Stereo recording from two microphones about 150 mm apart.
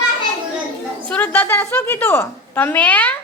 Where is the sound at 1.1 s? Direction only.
10° left (ahead or behind).